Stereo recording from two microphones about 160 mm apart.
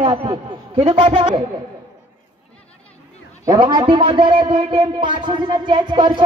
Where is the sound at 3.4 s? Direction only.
25° right (ahead or behind).